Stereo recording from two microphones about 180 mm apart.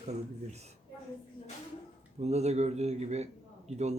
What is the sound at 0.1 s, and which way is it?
Speech, 35° right (ahead or behind).